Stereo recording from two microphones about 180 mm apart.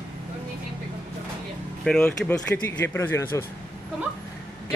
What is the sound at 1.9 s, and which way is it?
Speech, 5° left (ahead or behind).